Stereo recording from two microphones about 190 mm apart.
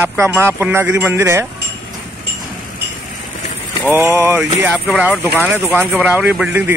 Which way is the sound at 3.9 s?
15° right (ahead or behind).